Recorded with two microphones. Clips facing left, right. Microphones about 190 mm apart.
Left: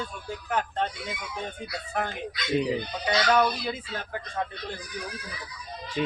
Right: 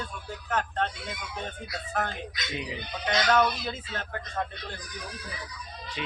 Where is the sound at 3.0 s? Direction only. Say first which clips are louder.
Left 1 dB; 10° left (ahead or behind).